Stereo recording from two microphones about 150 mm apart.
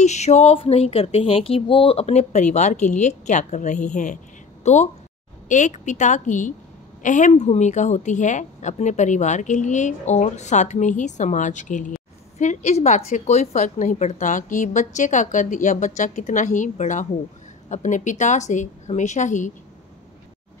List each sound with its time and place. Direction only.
0.0 s a woman's voice: 50° left (ahead or behind)